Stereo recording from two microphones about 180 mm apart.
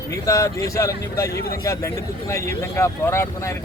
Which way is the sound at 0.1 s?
15° left (ahead or behind).